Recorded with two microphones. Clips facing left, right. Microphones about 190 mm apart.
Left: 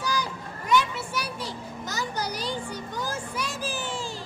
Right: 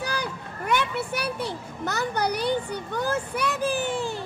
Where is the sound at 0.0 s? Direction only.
60° right (ahead or behind).